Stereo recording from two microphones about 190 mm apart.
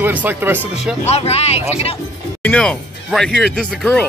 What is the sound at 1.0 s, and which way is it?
Speech, 35° left (ahead or behind).